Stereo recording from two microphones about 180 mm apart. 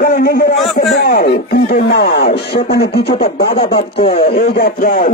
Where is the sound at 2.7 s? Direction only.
65° left (ahead or behind).